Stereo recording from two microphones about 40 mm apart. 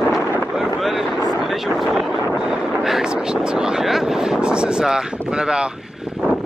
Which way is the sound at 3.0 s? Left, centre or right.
Right.